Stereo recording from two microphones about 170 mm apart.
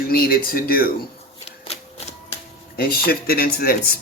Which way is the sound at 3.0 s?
60° left (ahead or behind).